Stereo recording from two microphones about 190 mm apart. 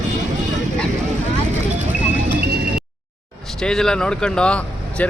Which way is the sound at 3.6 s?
5° left (ahead or behind).